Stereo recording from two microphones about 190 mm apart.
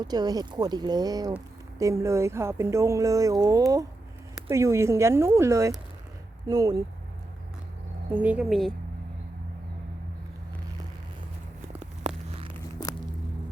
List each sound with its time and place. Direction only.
0.0 s speech: 20° right (ahead or behind)
8.1 s speech: 10° right (ahead or behind)
12.0 s a sound: 30° right (ahead or behind)